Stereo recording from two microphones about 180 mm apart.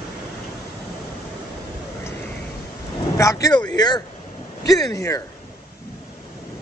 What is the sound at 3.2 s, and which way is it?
Speech, 20° left (ahead or behind).